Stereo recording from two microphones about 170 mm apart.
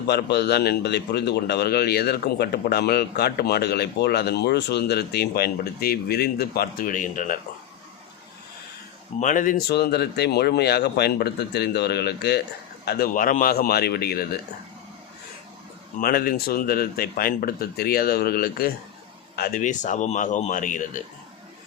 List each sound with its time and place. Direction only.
0.1 s a man's voice: 75° left (ahead or behind); by 7.3 s 50° left (ahead or behind)
9.2 s a man's voice: 50° left (ahead or behind); by 12.4 s 75° left (ahead or behind)
12.8 s speech: 65° left (ahead or behind)
16.0 s speech: 60° left (ahead or behind)